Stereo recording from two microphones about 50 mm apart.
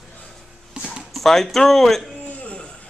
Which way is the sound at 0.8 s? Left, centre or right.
Centre.